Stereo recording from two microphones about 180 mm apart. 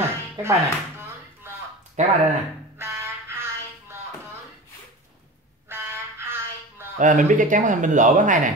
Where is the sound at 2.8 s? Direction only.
15° right (ahead or behind).